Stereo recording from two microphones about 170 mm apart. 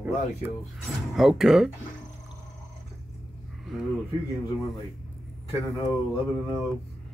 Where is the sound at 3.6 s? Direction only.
Centre (ahead or behind).